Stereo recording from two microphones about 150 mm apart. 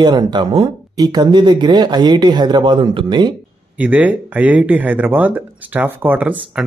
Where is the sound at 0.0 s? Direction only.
30° right (ahead or behind).